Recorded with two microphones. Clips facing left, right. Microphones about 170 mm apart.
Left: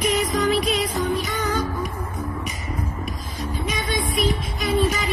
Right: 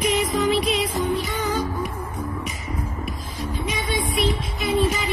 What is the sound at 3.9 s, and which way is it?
Music, 25° right (ahead or behind).